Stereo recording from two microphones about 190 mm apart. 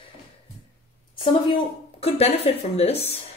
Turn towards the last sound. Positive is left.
turn(degrees=35)  # may be behind; listen again after turning